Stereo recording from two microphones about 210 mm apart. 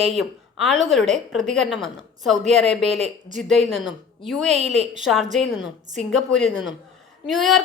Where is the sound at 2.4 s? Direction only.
30° right (ahead or behind).